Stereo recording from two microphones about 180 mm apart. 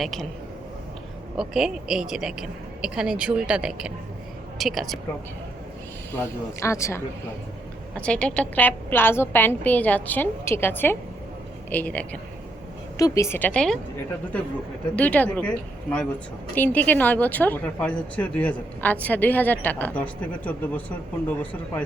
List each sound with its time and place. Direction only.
0.0 s speech: centre (ahead or behind)
1.4 s speech: 5° right (ahead or behind)
6.6 s a woman's voice: 15° left (ahead or behind)
14.9 s a woman's voice: 10° left (ahead or behind)